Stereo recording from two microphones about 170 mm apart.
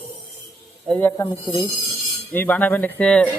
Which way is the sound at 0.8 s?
5° left (ahead or behind).